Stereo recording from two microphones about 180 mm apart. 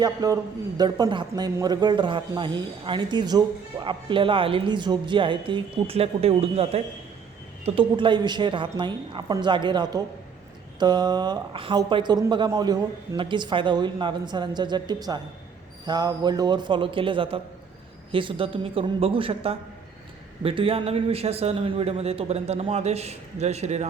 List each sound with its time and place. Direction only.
0.0 s a man's voice: 20° right (ahead or behind); by 23.9 s 40° right (ahead or behind)